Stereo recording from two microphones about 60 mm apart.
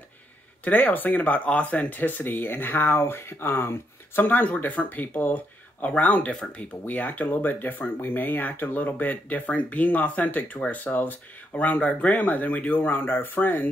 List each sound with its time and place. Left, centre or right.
0.7 s speech: left